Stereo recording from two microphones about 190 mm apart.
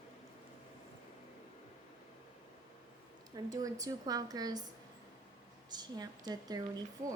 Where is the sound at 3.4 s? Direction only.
20° right (ahead or behind).